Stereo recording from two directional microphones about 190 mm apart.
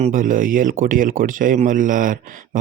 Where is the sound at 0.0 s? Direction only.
45° right (ahead or behind).